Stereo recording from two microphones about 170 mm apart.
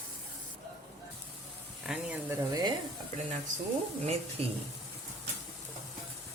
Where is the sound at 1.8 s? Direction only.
5° right (ahead or behind).